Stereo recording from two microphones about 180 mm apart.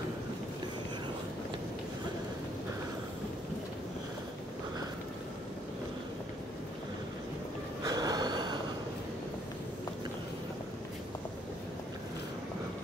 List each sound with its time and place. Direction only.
7.8 s gasp: 20° right (ahead or behind)